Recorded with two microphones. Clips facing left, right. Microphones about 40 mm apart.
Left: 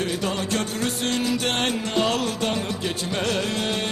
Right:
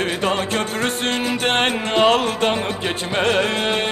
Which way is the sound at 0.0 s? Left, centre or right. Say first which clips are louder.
Right 5 dB; right.